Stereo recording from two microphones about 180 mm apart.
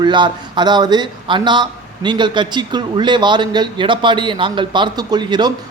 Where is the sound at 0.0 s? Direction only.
25° right (ahead or behind).